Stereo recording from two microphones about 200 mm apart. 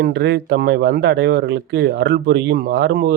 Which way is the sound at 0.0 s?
55° right (ahead or behind).